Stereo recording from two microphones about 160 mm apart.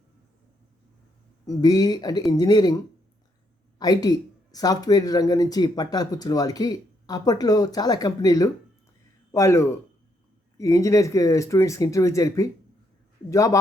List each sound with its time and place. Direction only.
1.5 s speech: 25° left (ahead or behind)
3.8 s speech: 25° left (ahead or behind)